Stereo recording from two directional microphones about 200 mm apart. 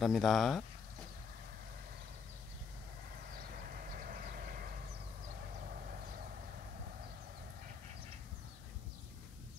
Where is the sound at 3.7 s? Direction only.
45° right (ahead or behind).